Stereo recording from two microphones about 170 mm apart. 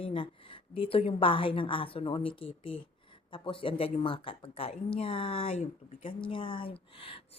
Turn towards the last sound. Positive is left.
turn(degrees=30)  # may be behind; listen again after turning